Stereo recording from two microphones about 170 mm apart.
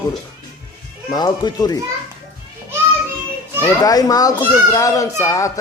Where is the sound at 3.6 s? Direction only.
20° left (ahead or behind).